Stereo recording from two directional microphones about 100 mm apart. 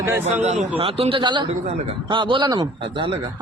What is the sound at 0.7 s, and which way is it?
Speech, 75° right (ahead or behind).